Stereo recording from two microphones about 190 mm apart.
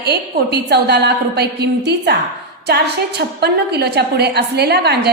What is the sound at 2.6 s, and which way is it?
A woman's voice, 60° right (ahead or behind).